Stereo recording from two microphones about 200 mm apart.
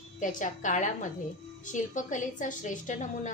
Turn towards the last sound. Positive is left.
turn(degrees=40)  # may be behind; listen again after turning